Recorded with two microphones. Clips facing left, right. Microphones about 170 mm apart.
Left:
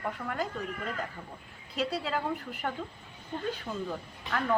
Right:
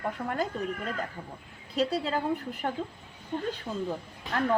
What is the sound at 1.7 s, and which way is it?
A woman's voice, 30° right (ahead or behind).